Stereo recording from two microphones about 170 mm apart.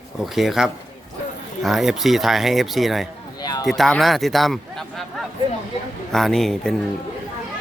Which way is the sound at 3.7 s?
Centre (ahead or behind).